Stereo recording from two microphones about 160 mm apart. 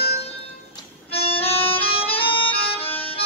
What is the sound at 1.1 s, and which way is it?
Music, 35° left (ahead or behind).